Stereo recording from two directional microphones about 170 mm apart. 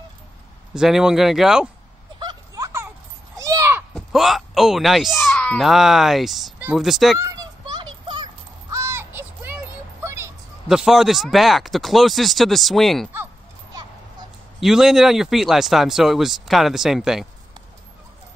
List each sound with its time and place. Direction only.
0.7 s speech: 5° right (ahead or behind)
2.1 s vehicle: 20° right (ahead or behind)
3.3 s a sound: 20° right (ahead or behind)
3.9 s speech: centre (ahead or behind)
7.2 s a sound: 20° right (ahead or behind)
10.7 s speech: 5° right (ahead or behind)
14.6 s speech: 5° right (ahead or behind)